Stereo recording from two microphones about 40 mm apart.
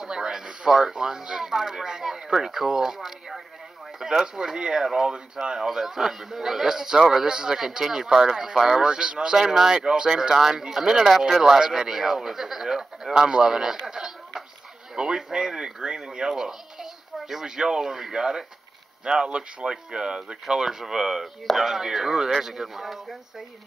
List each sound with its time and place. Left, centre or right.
0.0 s speech: centre
8.8 s speech: right; by 23.1 s centre